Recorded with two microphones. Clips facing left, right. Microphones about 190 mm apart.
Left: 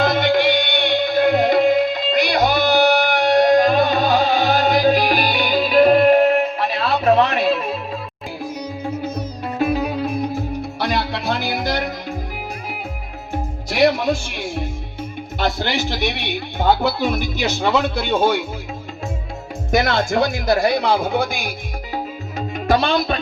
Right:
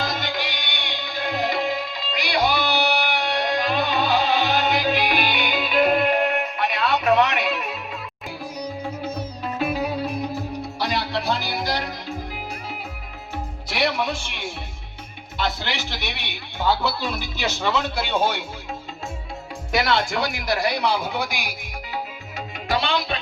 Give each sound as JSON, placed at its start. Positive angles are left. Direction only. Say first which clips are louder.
{"t": 0.0, "sound": "music", "louder": "left 11 dB", "side_deg": 55}
{"t": 9.6, "sound": "music", "louder": "left 5 dB", "side_deg": 45}
{"t": 13.3, "sound": "music", "louder": "left 6 dB", "side_deg": 45}
{"t": 19.7, "sound": "speech", "louder": "left 4 dB", "side_deg": 45}
{"t": 21.9, "sound": "music", "louder": "left 5 dB", "side_deg": 45}